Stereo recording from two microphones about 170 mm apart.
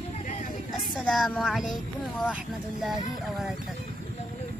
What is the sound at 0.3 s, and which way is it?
Vehicle, 45° left (ahead or behind).